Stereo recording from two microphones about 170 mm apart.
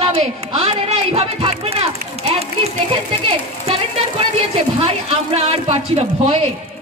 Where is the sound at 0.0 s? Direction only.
35° right (ahead or behind).